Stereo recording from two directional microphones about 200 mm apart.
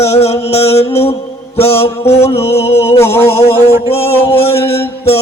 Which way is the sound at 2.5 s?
30° left (ahead or behind).